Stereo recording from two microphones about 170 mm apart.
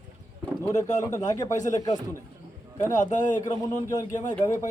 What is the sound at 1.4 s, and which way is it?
Speech, 45° left (ahead or behind).